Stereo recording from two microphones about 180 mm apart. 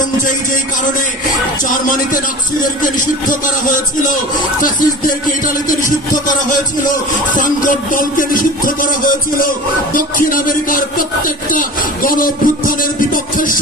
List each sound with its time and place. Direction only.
2.6 s speech: 50° left (ahead or behind)
7.3 s speech: 45° left (ahead or behind)